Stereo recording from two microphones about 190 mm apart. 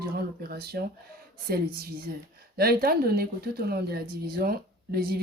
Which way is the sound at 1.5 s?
55° right (ahead or behind).